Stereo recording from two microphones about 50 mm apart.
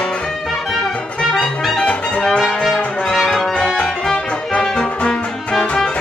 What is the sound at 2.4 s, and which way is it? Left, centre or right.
Brass instrument, centre.